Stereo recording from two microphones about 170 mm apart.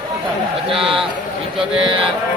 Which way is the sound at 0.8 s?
30° right (ahead or behind).